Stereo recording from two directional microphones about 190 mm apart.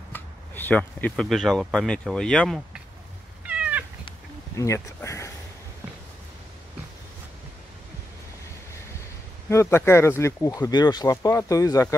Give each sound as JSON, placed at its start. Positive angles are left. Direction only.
{"t": 0.1, "sound": "speech", "side_deg": 10}
{"t": 3.4, "sound": "cat", "side_deg": -5}
{"t": 4.6, "sound": "speech", "side_deg": 15}
{"t": 9.5, "sound": "speech", "side_deg": 15}